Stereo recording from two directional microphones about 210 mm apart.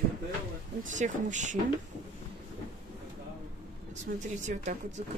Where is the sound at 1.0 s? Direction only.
35° right (ahead or behind).